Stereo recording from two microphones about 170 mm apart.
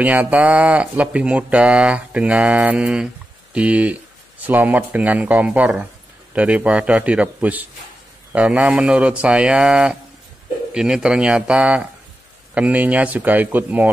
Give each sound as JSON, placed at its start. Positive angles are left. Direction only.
{"t": 0.0, "sound": "speech", "side_deg": -10}